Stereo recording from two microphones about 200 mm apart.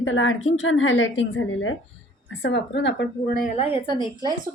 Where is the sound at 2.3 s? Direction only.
65° left (ahead or behind); by 3.5 s 50° left (ahead or behind).